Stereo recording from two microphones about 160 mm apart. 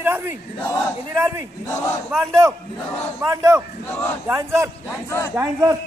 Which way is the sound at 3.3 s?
20° right (ahead or behind).